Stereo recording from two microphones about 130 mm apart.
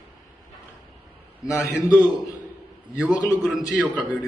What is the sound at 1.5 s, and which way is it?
A man's voice, 25° left (ahead or behind).